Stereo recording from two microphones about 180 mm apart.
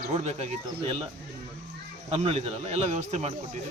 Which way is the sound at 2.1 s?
35° right (ahead or behind).